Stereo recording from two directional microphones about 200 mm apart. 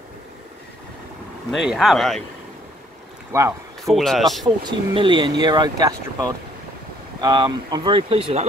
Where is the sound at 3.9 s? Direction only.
Centre (ahead or behind).